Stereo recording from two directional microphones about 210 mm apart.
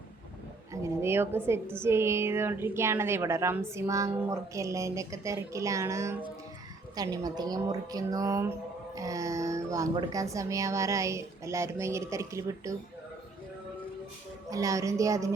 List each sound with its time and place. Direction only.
0.7 s a woman's voice: 15° right (ahead or behind)
14.5 s a woman's voice: 15° right (ahead or behind)